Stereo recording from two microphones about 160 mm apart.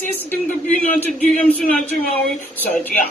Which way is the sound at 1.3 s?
10° left (ahead or behind).